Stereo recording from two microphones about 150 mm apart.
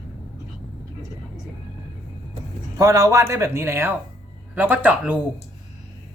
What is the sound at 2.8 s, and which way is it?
Speech, 20° right (ahead or behind).